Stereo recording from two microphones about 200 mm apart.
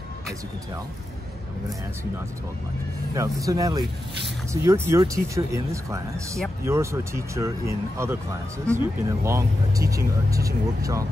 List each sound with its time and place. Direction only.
3.2 s speech: 15° right (ahead or behind)